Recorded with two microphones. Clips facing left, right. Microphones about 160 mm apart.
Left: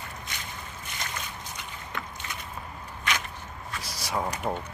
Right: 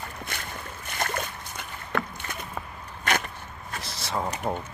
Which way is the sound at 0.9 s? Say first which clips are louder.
Right 8 dB; 55° right (ahead or behind).